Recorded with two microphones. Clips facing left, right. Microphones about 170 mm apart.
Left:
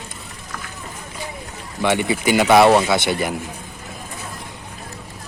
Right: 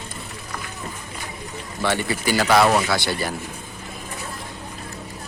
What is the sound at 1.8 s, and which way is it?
Speech, 15° left (ahead or behind).